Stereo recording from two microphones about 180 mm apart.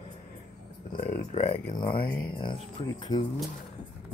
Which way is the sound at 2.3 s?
25° left (ahead or behind).